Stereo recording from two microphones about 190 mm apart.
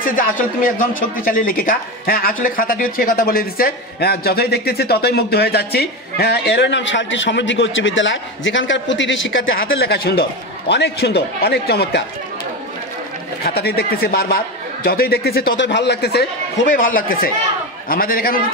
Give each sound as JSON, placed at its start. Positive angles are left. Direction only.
{"t": 0.0, "sound": "speech", "side_deg": 45}
{"t": 9.6, "sound": "speech", "side_deg": 55}
{"t": 13.4, "sound": "speech", "side_deg": 55}
{"t": 16.6, "sound": "speech", "side_deg": 45}